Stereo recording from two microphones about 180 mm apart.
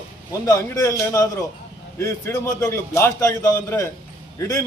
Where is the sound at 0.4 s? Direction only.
15° left (ahead or behind).